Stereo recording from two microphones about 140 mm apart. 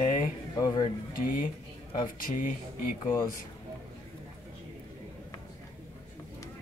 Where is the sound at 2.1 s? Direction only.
75° left (ahead or behind).